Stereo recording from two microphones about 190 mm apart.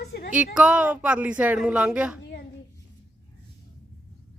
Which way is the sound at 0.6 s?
5° right (ahead or behind).